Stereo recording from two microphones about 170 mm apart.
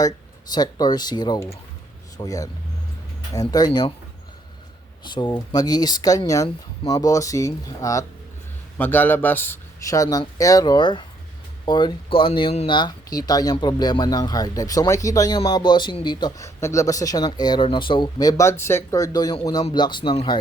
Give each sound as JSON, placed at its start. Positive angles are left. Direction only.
{"t": 0.5, "sound": "speech", "side_deg": 25}
{"t": 5.0, "sound": "speech", "side_deg": 25}